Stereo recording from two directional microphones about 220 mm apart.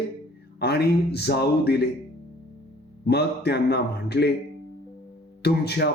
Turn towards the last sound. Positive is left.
turn(degrees=45)  # may be behind; listen again after turning